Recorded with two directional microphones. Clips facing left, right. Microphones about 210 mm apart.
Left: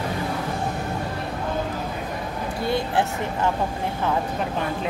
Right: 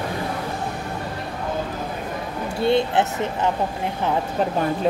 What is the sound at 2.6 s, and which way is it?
Speech, 25° right (ahead or behind).